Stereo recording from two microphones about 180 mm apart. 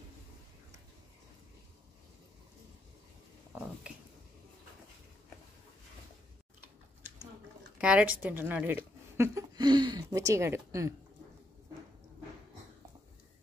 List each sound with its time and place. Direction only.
7.8 s speech: 5° right (ahead or behind)
9.6 s a woman's voice: 25° right (ahead or behind)